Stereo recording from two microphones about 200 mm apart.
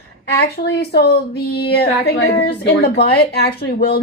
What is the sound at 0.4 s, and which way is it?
A woman's voice, 50° left (ahead or behind).